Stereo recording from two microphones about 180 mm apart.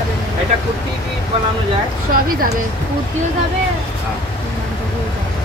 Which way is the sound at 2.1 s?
50° right (ahead or behind).